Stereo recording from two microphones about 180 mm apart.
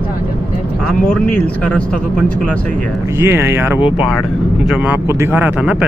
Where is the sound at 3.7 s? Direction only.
30° left (ahead or behind).